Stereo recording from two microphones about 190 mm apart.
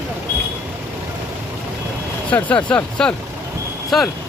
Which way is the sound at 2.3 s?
5° left (ahead or behind).